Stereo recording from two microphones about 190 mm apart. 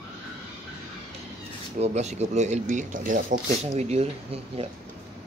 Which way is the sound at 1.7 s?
35° right (ahead or behind).